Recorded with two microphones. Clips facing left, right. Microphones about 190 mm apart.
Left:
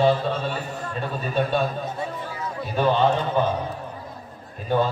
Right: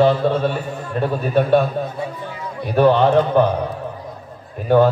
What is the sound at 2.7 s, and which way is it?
Speech, 60° right (ahead or behind).